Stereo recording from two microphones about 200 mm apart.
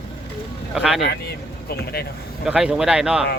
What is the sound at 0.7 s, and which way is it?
Speech, 5° right (ahead or behind).